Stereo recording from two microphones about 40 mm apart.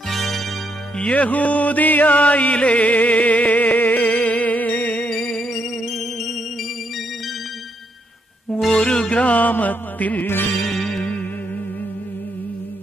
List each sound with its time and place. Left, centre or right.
0.1 s music: centre
0.9 s music: left
5.1 s music: centre
8.8 s music: left
10.2 s music: left
10.7 s music: centre